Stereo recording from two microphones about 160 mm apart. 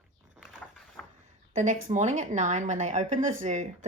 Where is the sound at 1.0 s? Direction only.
10° left (ahead or behind).